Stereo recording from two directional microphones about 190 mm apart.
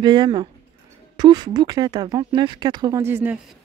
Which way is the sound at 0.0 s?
25° right (ahead or behind).